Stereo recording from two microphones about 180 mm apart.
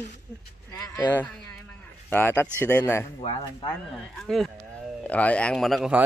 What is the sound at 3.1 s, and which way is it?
Speech, 30° left (ahead or behind).